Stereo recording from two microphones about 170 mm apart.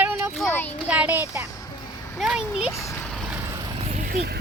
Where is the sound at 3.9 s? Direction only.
60° right (ahead or behind).